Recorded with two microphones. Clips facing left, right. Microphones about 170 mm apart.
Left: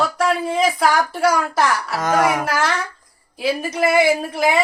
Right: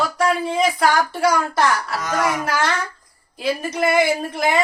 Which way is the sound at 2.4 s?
5° left (ahead or behind).